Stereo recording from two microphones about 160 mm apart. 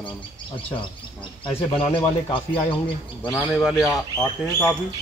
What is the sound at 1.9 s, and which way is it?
Speech, 30° left (ahead or behind).